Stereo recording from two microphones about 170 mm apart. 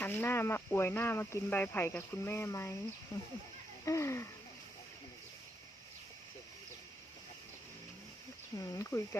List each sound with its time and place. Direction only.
0.0 s speech: 10° left (ahead or behind)
3.8 s speech: 15° left (ahead or behind)
8.5 s speech: 20° left (ahead or behind)